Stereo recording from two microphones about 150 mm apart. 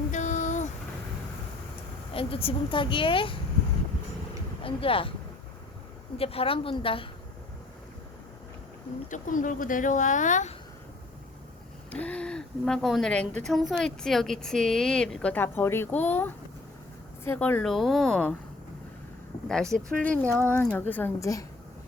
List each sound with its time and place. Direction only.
0.1 s a sound: 55° left (ahead or behind)
2.1 s a woman's voice: 40° left (ahead or behind)
4.6 s a woman's voice: 35° left (ahead or behind)
6.1 s a woman's voice: 40° left (ahead or behind)
9.0 s speech: 60° left (ahead or behind)
11.9 s speech: 10° left (ahead or behind)
19.7 s a woman's voice: 10° left (ahead or behind)